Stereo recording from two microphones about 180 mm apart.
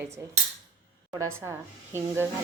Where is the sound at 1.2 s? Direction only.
15° right (ahead or behind).